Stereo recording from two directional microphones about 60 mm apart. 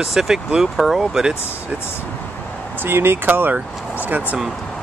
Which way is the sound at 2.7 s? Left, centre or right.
Right.